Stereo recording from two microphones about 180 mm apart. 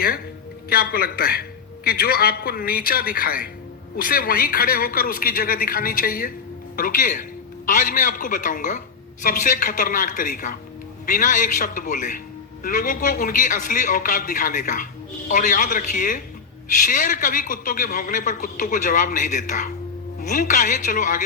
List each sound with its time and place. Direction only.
0.7 s a man's voice: 55° left (ahead or behind)